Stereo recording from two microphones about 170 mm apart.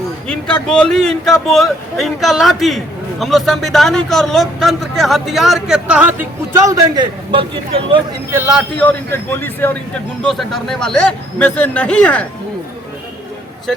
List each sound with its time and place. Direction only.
0.3 s speech: 5° left (ahead or behind)
6.7 s a man's voice: 25° right (ahead or behind)
8.3 s a man's voice: 10° right (ahead or behind)
8.8 s a man's voice: 10° left (ahead or behind)
10.2 s speech: centre (ahead or behind)